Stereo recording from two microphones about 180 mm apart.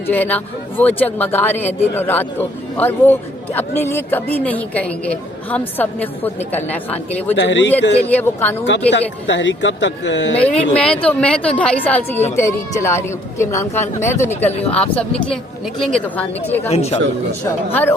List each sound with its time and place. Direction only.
0.1 s speech: 10° left (ahead or behind)
7.3 s a man's voice: 85° left
8.1 s speech: 10° left (ahead or behind)
8.9 s speech: 80° left
10.3 s speech: 5° left (ahead or behind)
16.6 s speech: 35° left (ahead or behind)
17.4 s speech: 10° left (ahead or behind)